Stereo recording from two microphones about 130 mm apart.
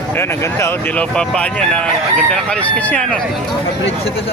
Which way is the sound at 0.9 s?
5° left (ahead or behind).